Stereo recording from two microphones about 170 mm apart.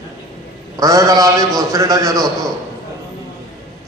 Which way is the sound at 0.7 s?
20° right (ahead or behind).